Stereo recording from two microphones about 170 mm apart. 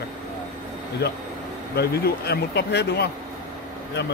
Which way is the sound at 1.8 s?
70° left (ahead or behind).